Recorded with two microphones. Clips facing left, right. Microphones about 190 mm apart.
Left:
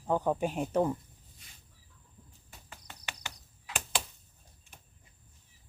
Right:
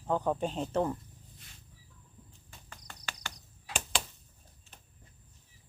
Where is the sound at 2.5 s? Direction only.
10° left (ahead or behind).